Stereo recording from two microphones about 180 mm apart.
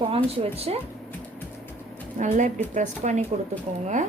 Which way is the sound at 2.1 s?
45° right (ahead or behind).